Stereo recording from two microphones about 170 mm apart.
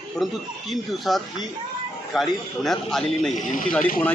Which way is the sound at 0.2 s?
Centre (ahead or behind).